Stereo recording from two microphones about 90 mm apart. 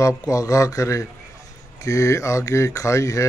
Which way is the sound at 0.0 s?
40° left (ahead or behind).